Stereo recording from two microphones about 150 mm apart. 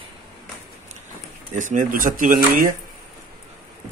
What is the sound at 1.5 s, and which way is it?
Speech, 60° right (ahead or behind).